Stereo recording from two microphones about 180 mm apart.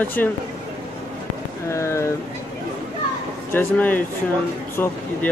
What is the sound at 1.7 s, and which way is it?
Speech, 15° left (ahead or behind).